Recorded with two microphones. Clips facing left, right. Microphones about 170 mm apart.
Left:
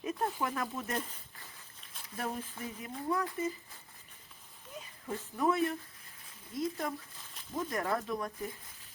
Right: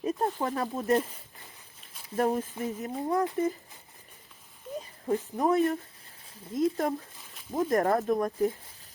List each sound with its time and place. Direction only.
0.0 s speech: 35° right (ahead or behind)
2.1 s speech: 45° right (ahead or behind)
4.8 s speech: 40° right (ahead or behind)
6.5 s speech: 55° right (ahead or behind)